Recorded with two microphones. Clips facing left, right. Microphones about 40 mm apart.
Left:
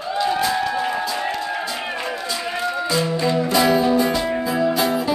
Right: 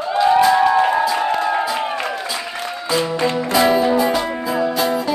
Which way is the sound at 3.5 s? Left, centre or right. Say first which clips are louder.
Right 3 dB; centre.